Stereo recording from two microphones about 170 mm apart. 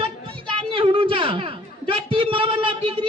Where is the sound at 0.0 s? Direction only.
30° right (ahead or behind).